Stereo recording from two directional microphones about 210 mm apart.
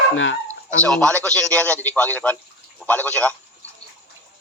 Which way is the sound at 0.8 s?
5° left (ahead or behind).